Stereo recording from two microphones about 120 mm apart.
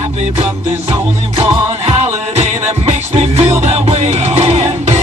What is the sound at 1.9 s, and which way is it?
Music, 60° right (ahead or behind).